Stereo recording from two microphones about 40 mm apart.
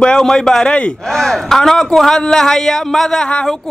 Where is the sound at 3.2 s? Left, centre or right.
Left.